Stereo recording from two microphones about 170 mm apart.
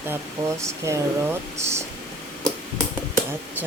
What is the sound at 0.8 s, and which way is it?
Speech, 15° right (ahead or behind).